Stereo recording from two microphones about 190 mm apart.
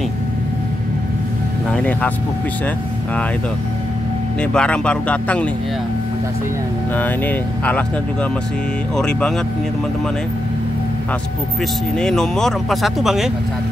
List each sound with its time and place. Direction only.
1.7 s speech: 5° left (ahead or behind)
4.4 s speech: 5° left (ahead or behind)
7.0 s speech: 10° left (ahead or behind)
12.0 s speech: 5° left (ahead or behind)